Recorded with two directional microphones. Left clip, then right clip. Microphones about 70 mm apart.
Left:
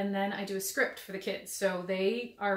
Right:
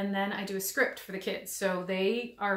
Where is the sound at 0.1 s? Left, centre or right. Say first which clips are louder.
Right 1 dB; right.